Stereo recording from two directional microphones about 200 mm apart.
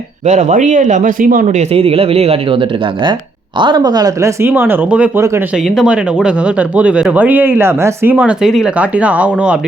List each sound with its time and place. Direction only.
0.3 s speech: 35° right (ahead or behind); by 5.4 s 15° right (ahead or behind)
5.5 s speech: centre (ahead or behind)